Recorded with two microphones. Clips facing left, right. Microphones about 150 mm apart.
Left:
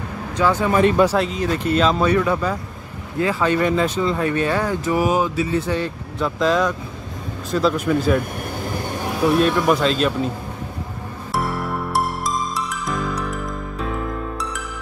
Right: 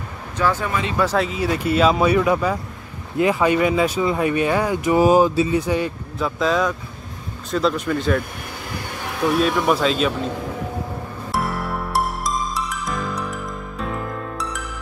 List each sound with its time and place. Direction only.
0.4 s speech: 15° left (ahead or behind)
1.1 s speech: 5° right (ahead or behind)
4.9 s speech: 30° right (ahead or behind)
5.5 s speech: 10° right (ahead or behind)
6.1 s speech: centre (ahead or behind)
9.2 s speech: centre (ahead or behind)
11.3 s music: centre (ahead or behind)